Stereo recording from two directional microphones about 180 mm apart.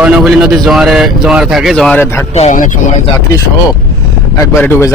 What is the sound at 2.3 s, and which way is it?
Speech, 45° left (ahead or behind).